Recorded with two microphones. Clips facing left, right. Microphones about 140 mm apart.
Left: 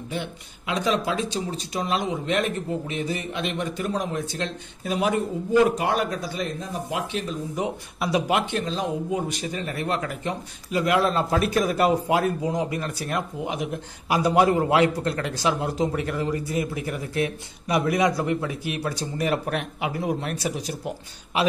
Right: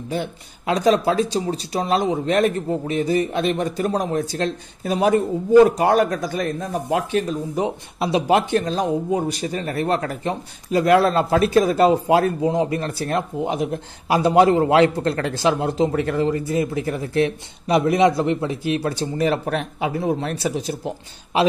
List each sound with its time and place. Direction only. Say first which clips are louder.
0.1 s speech: right 6 dB; 40° right (ahead or behind)
7.5 s speech: right 5 dB; 30° right (ahead or behind)